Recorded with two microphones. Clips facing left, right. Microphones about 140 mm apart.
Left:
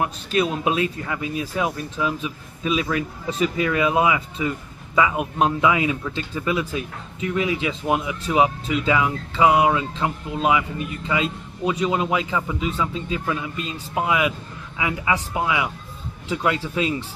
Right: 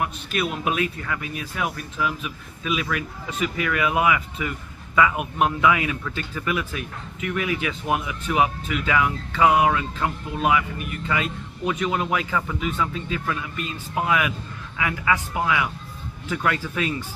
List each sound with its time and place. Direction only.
0.0 s speech: 30° left (ahead or behind)